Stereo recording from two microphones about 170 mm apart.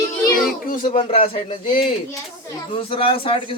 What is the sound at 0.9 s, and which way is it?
A man's voice, 30° left (ahead or behind).